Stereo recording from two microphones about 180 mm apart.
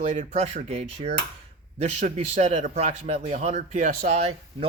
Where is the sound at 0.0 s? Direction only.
40° right (ahead or behind).